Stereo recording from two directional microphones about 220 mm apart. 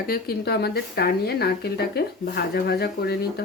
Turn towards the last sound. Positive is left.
turn(degrees=45)  # may be behind; listen again after turning